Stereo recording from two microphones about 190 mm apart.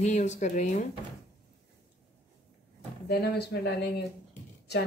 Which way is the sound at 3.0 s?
60° left (ahead or behind).